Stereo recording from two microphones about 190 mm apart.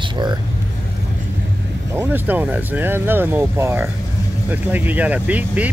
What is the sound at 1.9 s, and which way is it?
Speech, 10° right (ahead or behind).